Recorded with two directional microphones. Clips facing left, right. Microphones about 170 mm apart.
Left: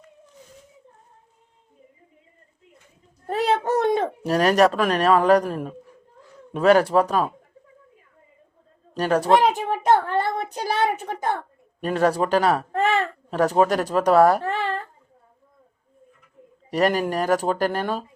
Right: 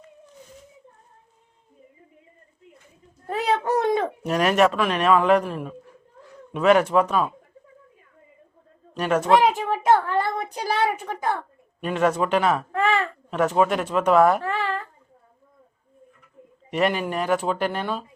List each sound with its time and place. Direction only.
3.4 s a sound: 25° left (ahead or behind)
4.2 s speech: 35° left (ahead or behind)
9.0 s speech: 35° left (ahead or behind)
9.5 s a child's voice: 20° left (ahead or behind)
11.0 s speech: 35° left (ahead or behind)
16.6 s speech: 40° left (ahead or behind)